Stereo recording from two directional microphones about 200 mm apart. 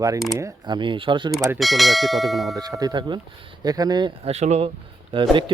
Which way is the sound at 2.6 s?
20° right (ahead or behind).